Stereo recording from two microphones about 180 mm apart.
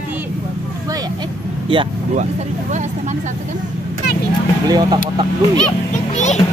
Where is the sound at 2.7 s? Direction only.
40° right (ahead or behind).